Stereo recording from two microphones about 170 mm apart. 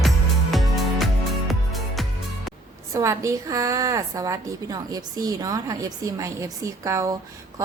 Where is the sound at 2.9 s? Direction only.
20° right (ahead or behind).